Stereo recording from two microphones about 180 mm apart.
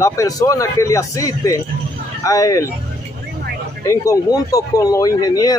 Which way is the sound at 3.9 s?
20° left (ahead or behind).